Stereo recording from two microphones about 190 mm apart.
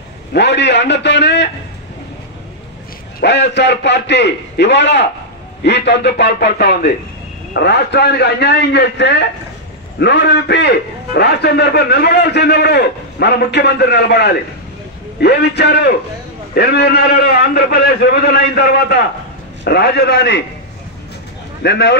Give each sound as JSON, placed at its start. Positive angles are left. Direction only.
{"t": 0.3, "sound": "a man's voice", "side_deg": 65}
{"t": 3.2, "sound": "a man's voice", "side_deg": 65}
{"t": 21.6, "sound": "speech", "side_deg": 65}